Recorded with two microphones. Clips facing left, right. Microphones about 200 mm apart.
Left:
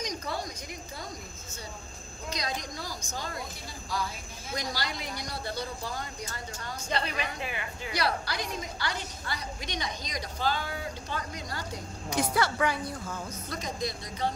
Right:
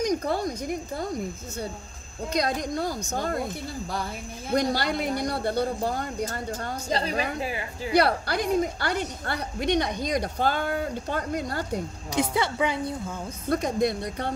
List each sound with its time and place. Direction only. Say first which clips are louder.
0.1 s a woman's voice: right 10 dB; 55° right (ahead or behind)
2.3 s a woman's voice: right 10 dB; 55° right (ahead or behind)
4.5 s a woman's voice: right 11 dB; 60° right (ahead or behind)
6.9 s a woman's voice: right 5 dB; 35° right (ahead or behind)
7.9 s a woman's voice: right 9 dB; 55° right (ahead or behind)
12.2 s a woman's voice: right 3 dB; 20° right (ahead or behind)
13.5 s a woman's voice: right 12 dB; 60° right (ahead or behind)